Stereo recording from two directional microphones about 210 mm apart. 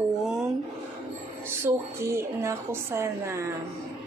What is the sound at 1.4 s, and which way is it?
A woman's voice, 10° right (ahead or behind).